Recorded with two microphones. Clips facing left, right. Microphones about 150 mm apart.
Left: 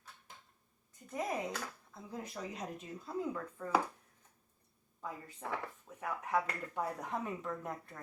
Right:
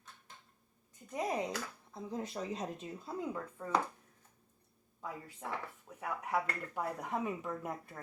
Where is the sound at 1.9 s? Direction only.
25° right (ahead or behind).